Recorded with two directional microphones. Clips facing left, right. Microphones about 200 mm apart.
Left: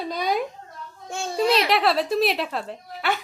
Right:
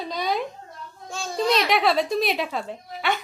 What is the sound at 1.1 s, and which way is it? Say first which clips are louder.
Speech: left 3 dB; 25° left (ahead or behind).